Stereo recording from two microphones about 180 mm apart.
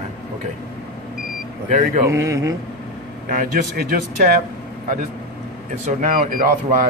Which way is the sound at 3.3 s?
50° right (ahead or behind).